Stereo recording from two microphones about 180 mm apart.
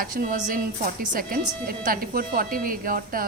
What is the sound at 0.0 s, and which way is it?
A woman's voice, 50° right (ahead or behind).